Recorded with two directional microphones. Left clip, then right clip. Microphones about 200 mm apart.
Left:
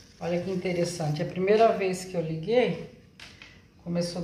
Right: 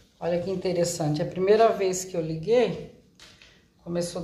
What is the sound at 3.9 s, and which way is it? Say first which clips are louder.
Speech: right 2 dB; 15° right (ahead or behind).